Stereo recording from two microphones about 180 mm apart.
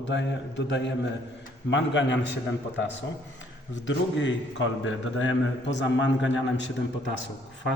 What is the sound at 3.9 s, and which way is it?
A man's voice, 90° left.